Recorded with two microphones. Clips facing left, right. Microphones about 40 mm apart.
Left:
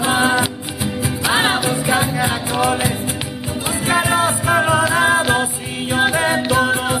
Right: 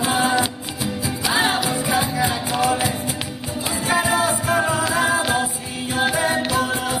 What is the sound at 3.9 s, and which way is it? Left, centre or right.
Music, left.